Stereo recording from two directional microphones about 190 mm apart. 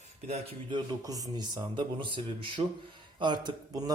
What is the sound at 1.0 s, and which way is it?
A man's voice, 20° right (ahead or behind).